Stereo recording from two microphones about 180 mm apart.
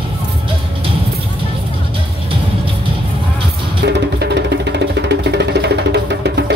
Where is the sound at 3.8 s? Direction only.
65° right (ahead or behind).